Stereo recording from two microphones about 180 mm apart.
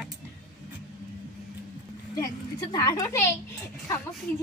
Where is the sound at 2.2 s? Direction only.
20° left (ahead or behind).